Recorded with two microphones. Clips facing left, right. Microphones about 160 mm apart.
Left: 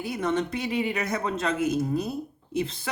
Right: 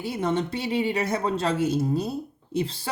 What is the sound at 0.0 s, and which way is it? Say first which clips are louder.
A woman's voice: right 1 dB; 30° right (ahead or behind).